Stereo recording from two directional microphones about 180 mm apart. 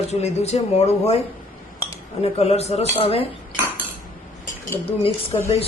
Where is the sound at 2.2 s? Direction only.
35° left (ahead or behind).